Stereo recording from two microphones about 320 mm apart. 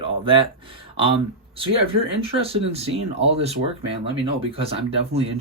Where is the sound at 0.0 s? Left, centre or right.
Centre.